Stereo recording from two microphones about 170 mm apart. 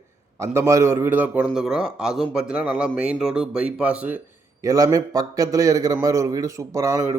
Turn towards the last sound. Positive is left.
turn(degrees=-15)  # may be behind; listen again after turning